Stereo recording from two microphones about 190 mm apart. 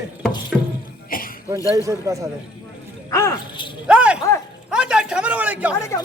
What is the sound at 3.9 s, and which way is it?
A man's voice, 5° right (ahead or behind).